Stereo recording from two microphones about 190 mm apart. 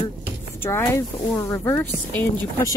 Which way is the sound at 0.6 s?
10° left (ahead or behind).